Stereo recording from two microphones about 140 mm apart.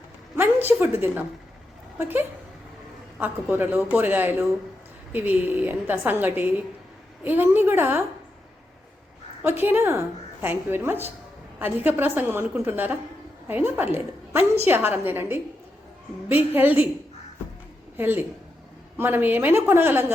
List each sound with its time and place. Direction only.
0.3 s a woman's voice: 15° right (ahead or behind)
9.4 s a woman's voice: 15° right (ahead or behind)
16.6 s a woman's voice: 10° right (ahead or behind)
17.9 s a woman's voice: 15° right (ahead or behind)